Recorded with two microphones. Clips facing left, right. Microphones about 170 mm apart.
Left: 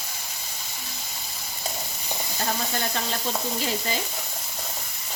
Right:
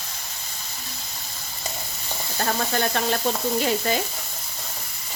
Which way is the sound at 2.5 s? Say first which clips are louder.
Right 5 dB; 60° right (ahead or behind).